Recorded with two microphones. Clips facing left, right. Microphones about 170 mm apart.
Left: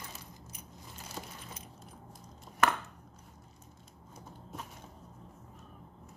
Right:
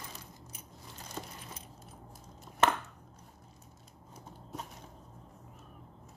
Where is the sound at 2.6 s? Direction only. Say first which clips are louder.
Right 1 dB; 25° right (ahead or behind).